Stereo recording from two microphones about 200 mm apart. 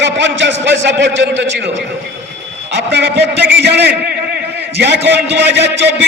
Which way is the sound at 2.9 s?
55° right (ahead or behind).